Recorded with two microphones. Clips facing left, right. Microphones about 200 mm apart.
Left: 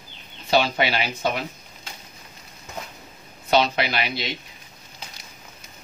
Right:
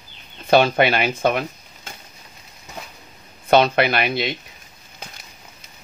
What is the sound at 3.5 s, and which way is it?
Speech, 55° right (ahead or behind).